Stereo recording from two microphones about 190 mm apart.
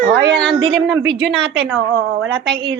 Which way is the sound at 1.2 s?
70° right (ahead or behind).